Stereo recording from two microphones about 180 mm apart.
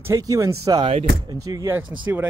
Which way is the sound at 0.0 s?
15° right (ahead or behind).